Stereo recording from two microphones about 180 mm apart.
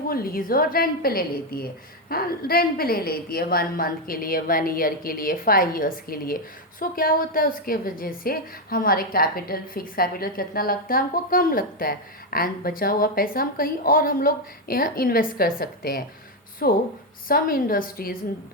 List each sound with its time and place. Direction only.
0.1 s a woman's voice: 55° left (ahead or behind)